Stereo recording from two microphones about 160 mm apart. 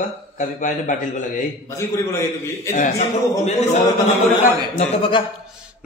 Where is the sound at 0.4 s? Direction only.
50° left (ahead or behind).